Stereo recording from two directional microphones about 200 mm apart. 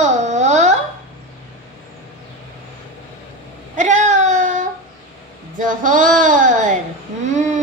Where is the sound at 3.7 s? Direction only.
35° right (ahead or behind).